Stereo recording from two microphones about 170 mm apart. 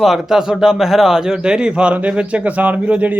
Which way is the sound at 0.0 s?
Centre (ahead or behind).